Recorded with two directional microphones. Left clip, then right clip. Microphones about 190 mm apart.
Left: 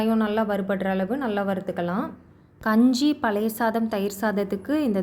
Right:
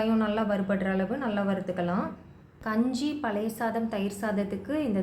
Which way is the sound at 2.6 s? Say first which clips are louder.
Left 8 dB; 50° left (ahead or behind).